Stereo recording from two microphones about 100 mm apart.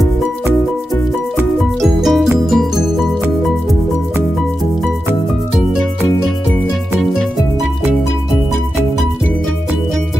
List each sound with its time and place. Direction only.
1.8 s music: centre (ahead or behind)